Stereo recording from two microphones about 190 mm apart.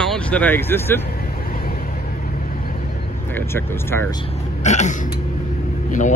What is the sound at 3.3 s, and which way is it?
Speech, 10° left (ahead or behind).